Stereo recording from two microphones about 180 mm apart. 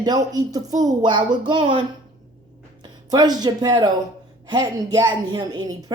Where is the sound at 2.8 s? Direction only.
20° right (ahead or behind).